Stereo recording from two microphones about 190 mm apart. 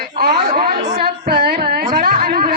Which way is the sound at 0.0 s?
60° right (ahead or behind).